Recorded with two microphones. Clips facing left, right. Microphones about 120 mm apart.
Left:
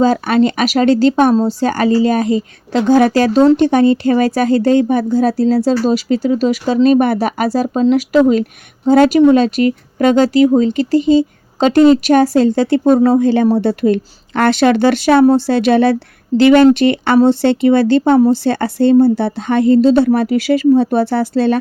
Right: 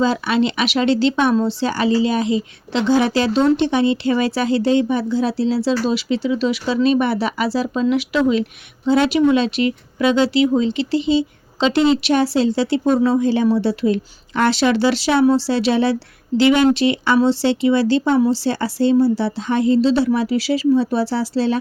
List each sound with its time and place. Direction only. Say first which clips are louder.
0.0 s speech: left 5 dB; 45° left (ahead or behind)